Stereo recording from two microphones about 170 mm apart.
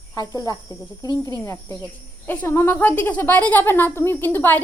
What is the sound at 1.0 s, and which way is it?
Speech, 25° right (ahead or behind).